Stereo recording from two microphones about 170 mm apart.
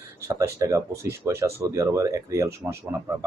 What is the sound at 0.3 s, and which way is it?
Speech, 20° right (ahead or behind).